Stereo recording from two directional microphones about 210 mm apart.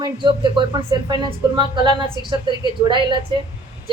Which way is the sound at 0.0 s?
20° right (ahead or behind).